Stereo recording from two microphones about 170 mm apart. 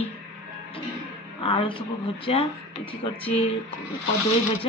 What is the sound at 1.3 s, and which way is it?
Speech, 30° left (ahead or behind).